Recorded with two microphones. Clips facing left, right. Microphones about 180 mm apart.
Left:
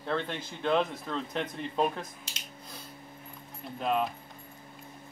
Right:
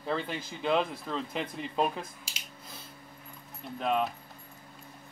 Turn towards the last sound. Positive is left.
turn(degrees=0)  # may be behind; listen again after turning